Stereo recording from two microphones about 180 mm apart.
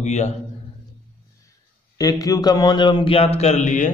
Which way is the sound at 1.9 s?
20° left (ahead or behind).